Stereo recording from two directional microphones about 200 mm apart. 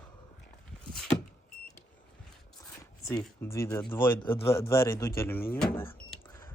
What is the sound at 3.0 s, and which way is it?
Speech, 15° left (ahead or behind).